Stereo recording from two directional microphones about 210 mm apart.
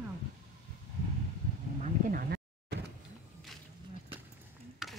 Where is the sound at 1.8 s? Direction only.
35° right (ahead or behind).